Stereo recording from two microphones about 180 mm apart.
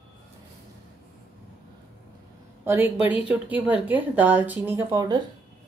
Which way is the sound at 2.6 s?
10° right (ahead or behind).